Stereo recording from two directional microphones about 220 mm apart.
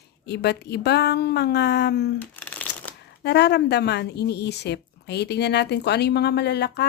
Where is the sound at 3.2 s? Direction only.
50° left (ahead or behind).